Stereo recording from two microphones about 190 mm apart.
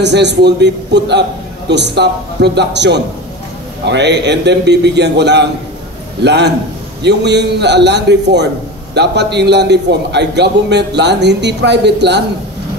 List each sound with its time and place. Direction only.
0.0 s a man's voice: 65° right (ahead or behind)